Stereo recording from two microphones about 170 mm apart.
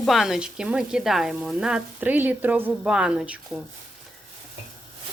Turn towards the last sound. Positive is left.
turn(degrees=-5)  # may be behind; listen again after turning